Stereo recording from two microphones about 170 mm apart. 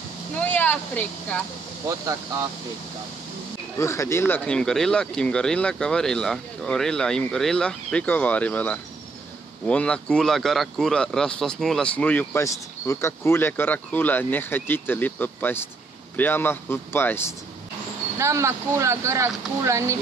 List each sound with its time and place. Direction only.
0.4 s speech: 10° left (ahead or behind)
3.7 s speech: 15° left (ahead or behind)
18.1 s speech: 15° right (ahead or behind)